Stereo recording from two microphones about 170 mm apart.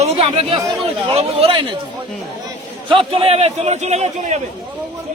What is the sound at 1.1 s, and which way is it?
Speech, 35° right (ahead or behind).